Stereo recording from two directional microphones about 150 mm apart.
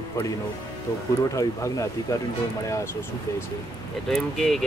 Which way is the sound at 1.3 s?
20° left (ahead or behind).